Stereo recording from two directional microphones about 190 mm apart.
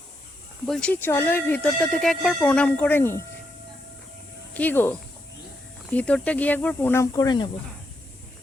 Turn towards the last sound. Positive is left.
turn(degrees=20)  # may be behind; listen again after turning